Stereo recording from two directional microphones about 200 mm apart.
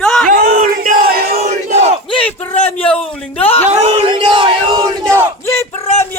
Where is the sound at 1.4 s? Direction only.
35° right (ahead or behind).